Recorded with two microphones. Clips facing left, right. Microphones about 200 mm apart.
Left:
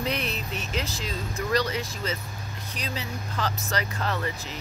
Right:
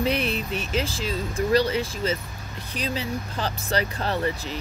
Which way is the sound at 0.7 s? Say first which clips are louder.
Right 5 dB; 30° right (ahead or behind).